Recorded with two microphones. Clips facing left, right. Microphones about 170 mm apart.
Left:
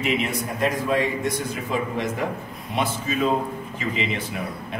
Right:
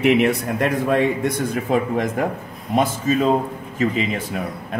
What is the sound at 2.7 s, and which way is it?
Speech, 40° right (ahead or behind).